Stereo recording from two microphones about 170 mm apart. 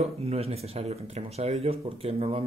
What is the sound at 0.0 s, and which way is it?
Speech, 35° right (ahead or behind).